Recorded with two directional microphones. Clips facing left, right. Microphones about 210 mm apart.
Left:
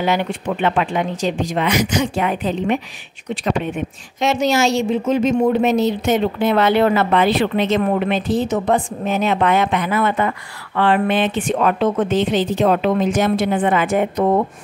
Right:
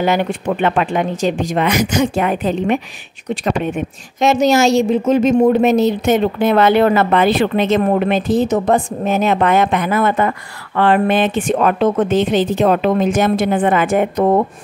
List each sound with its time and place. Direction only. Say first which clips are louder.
0.0 s a woman's voice: right 3 dB; 45° right (ahead or behind)